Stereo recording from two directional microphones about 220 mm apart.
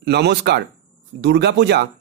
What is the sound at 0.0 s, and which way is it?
Speech, 50° right (ahead or behind).